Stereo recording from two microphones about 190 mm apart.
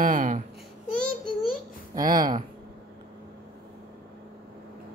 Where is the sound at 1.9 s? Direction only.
20° right (ahead or behind).